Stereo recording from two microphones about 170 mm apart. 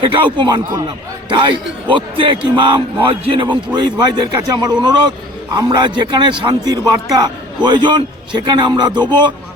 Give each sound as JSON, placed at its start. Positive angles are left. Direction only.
{"t": 0.3, "sound": "speech", "side_deg": -25}